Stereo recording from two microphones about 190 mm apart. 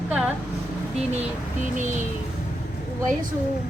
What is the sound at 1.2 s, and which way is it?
Child singing, 40° right (ahead or behind).